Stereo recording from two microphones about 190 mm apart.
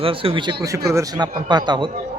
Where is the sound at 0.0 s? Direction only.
30° right (ahead or behind).